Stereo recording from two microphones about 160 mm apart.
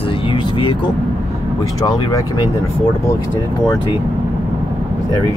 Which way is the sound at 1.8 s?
20° left (ahead or behind).